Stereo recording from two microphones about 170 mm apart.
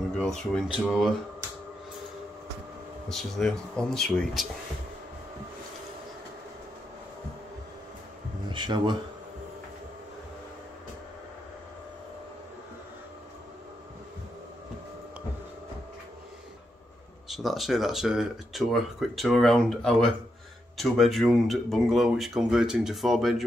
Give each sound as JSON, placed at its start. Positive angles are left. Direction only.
{"t": 0.1, "sound": "speech", "side_deg": 5}
{"t": 3.1, "sound": "speech", "side_deg": 0}
{"t": 8.5, "sound": "speech", "side_deg": -30}
{"t": 17.3, "sound": "speech", "side_deg": 0}